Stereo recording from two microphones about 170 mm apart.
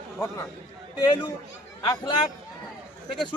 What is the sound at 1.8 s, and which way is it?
Speech, 25° left (ahead or behind).